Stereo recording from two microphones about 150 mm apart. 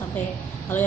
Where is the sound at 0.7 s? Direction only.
15° left (ahead or behind).